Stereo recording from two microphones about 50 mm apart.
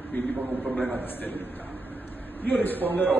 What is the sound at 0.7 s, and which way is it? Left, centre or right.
Speech, left.